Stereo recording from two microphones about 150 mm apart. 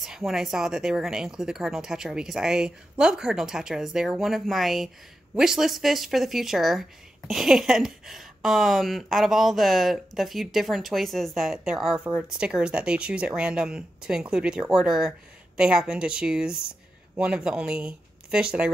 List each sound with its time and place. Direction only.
0.0 s speech: centre (ahead or behind)